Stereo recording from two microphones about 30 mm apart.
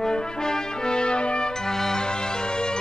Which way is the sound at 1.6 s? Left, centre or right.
Centre.